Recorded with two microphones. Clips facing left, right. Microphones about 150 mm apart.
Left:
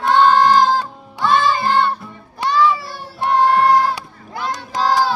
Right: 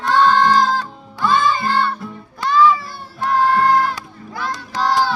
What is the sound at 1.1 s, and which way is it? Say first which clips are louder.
Music: left 1 dB; 20° left (ahead or behind).